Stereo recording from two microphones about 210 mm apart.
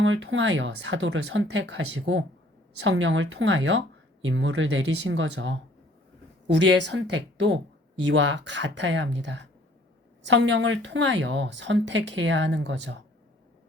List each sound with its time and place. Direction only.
0.0 s speech: 65° right (ahead or behind)